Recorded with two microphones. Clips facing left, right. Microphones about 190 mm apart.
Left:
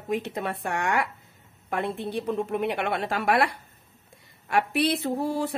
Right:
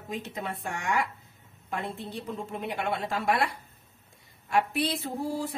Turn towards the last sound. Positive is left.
turn(degrees=70)  # may be behind; listen again after turning